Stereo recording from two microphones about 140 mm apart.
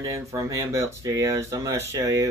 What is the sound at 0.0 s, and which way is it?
Speech, 20° right (ahead or behind).